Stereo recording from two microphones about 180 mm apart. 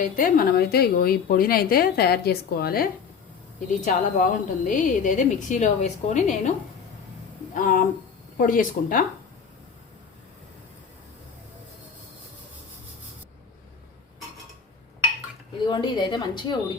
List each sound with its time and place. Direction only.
0.0 s a woman's voice: 55° left (ahead or behind)
3.7 s a woman's voice: 45° left (ahead or behind)
7.5 s a woman's voice: 50° left (ahead or behind)
15.6 s a woman's voice: 25° left (ahead or behind)